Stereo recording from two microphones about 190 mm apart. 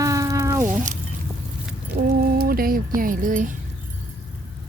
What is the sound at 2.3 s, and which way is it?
Speech, 50° right (ahead or behind).